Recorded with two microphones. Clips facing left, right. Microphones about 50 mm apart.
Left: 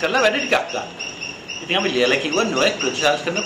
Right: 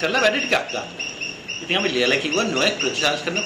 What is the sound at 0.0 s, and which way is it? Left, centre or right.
A man's voice, centre.